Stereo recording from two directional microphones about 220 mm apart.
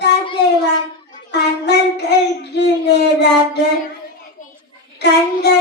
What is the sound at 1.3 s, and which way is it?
Child singing, 50° left (ahead or behind).